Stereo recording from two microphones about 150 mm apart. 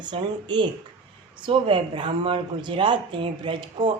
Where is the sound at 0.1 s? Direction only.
30° right (ahead or behind).